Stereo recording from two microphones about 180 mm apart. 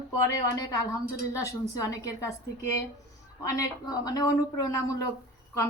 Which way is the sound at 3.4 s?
20° left (ahead or behind).